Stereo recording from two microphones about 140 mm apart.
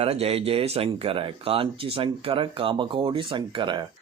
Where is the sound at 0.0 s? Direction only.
45° right (ahead or behind).